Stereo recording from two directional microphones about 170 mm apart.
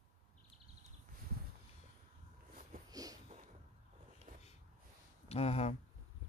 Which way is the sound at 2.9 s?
20° right (ahead or behind).